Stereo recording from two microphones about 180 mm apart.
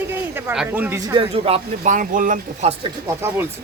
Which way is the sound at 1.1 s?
30° right (ahead or behind).